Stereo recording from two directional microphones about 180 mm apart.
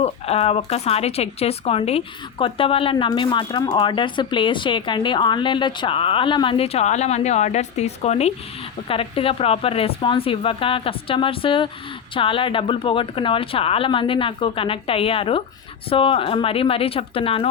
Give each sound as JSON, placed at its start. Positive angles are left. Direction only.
{"t": 0.0, "sound": "speech", "side_deg": 35}